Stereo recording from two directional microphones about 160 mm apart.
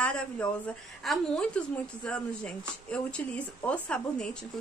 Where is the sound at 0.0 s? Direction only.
5° left (ahead or behind).